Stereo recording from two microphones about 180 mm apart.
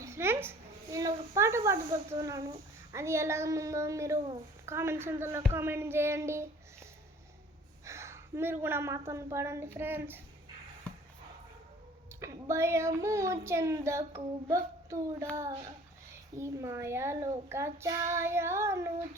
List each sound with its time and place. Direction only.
0.0 s a child's voice: 15° right (ahead or behind)
7.9 s a woman's voice: 15° right (ahead or behind)
12.2 s a child's voice: 15° right (ahead or behind)